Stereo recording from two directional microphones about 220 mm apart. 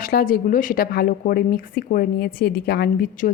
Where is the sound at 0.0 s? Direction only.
40° left (ahead or behind).